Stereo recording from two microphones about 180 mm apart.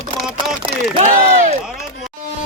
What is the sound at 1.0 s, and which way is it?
Speech, 40° right (ahead or behind).